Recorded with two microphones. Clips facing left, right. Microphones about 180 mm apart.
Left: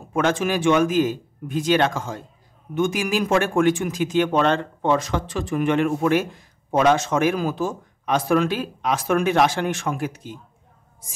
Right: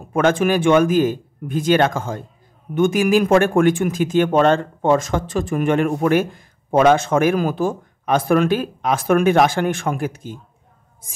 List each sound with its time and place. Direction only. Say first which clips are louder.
0.1 s speech: right 5 dB; 55° right (ahead or behind)